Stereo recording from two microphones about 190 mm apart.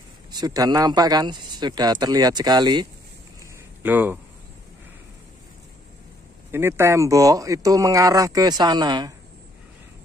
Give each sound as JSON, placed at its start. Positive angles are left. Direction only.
{"t": 0.3, "sound": "speech", "side_deg": -20}
{"t": 3.8, "sound": "speech", "side_deg": -10}
{"t": 6.5, "sound": "speech", "side_deg": -15}